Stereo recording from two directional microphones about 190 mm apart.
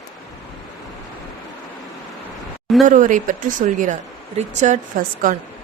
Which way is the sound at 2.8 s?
45° right (ahead or behind).